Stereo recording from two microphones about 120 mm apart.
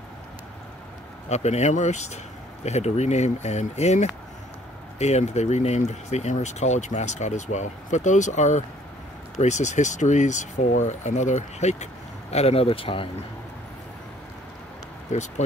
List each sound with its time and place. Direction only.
1.3 s speech: 70° left (ahead or behind); by 13.1 s 50° left (ahead or behind)